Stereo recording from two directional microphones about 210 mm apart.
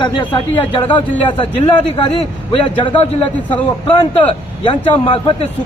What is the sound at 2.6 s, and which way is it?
Speech, 25° left (ahead or behind).